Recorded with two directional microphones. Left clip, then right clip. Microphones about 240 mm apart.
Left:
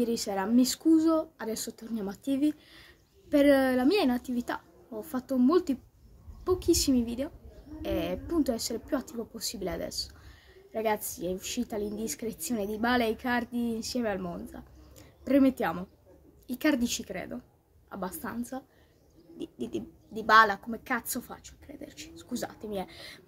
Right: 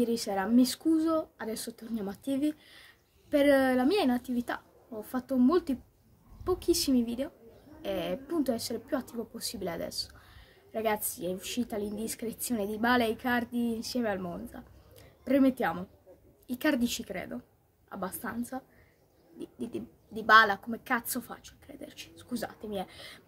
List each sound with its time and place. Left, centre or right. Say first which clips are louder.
0.0 s a woman's voice: even; centre